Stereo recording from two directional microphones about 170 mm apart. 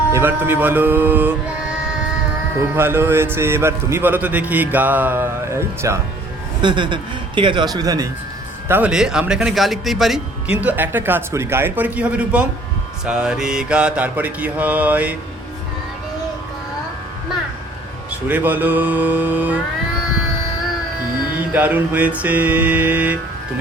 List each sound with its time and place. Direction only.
0.1 s speech: 10° right (ahead or behind)
2.7 s speech: 15° right (ahead or behind)
6.6 s a man's voice: 25° right (ahead or behind); by 15.1 s 10° right (ahead or behind)
18.3 s speech: 10° right (ahead or behind)
21.5 s speech: 10° right (ahead or behind)